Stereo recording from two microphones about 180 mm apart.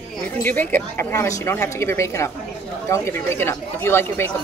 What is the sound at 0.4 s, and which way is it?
Speech, 10° left (ahead or behind).